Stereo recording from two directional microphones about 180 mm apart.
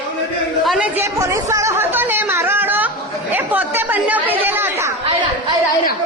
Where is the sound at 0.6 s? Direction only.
5° right (ahead or behind).